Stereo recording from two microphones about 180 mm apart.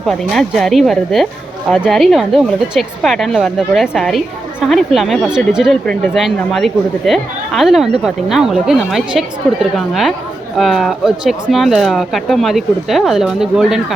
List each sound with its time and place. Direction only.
0.0 s speech: centre (ahead or behind)